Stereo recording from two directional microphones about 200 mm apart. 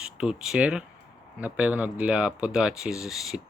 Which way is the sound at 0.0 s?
5° right (ahead or behind).